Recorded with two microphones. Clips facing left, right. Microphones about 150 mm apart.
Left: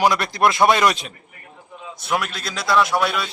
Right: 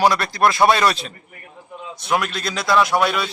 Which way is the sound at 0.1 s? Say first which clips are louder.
Right 1 dB; 20° left (ahead or behind).